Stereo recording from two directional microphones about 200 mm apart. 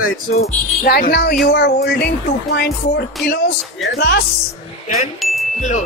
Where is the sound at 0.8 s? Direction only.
50° left (ahead or behind).